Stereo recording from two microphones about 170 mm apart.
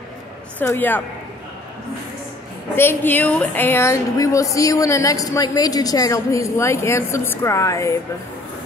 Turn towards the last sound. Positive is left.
turn(degrees=20)  # may be behind; listen again after turning